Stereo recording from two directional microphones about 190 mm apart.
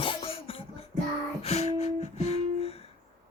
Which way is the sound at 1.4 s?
35° left (ahead or behind).